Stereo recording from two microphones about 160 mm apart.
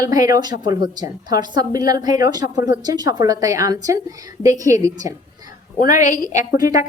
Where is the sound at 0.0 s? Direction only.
20° right (ahead or behind).